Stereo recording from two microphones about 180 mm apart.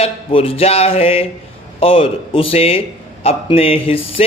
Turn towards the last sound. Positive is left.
turn(degrees=30)  # may be behind; listen again after turning